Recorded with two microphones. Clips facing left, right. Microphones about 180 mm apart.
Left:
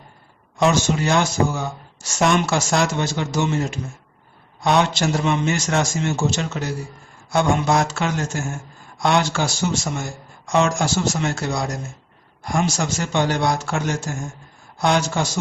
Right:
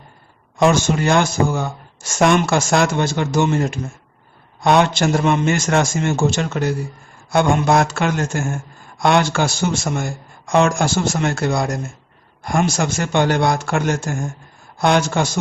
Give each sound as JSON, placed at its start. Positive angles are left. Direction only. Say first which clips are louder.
{"t": 0.6, "sound": "a man's voice", "louder": "right 3 dB", "side_deg": -55}